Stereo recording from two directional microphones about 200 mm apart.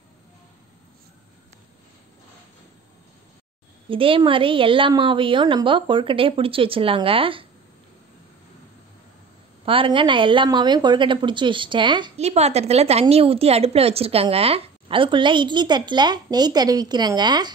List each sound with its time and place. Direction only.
3.9 s a woman's voice: 25° right (ahead or behind)
9.7 s a woman's voice: 25° right (ahead or behind)